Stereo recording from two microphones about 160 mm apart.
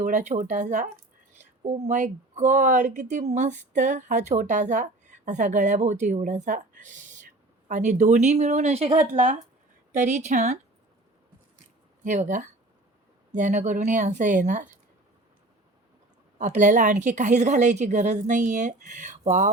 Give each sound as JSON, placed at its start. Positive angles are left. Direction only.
{"t": 0.0, "sound": "speech", "side_deg": -50}
{"t": 9.1, "sound": "speech", "side_deg": -50}
{"t": 12.0, "sound": "speech", "side_deg": -50}
{"t": 16.4, "sound": "speech", "side_deg": -50}